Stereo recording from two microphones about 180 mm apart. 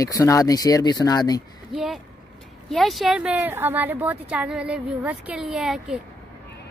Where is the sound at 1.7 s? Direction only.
Centre (ahead or behind).